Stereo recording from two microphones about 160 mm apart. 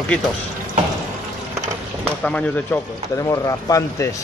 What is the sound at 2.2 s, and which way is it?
Speech, 10° left (ahead or behind).